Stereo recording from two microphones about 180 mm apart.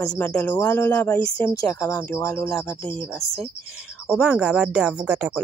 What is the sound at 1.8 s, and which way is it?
Speech, 20° left (ahead or behind).